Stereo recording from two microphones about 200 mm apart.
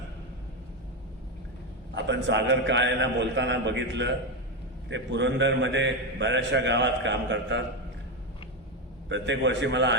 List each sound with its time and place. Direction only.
2.0 s a man's voice: 60° right (ahead or behind)
9.0 s a man's voice: 65° right (ahead or behind)